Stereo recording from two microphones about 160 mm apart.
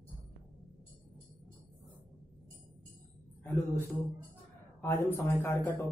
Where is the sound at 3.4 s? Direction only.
15° left (ahead or behind).